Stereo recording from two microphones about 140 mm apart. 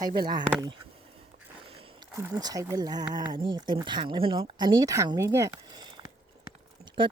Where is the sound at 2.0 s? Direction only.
30° right (ahead or behind).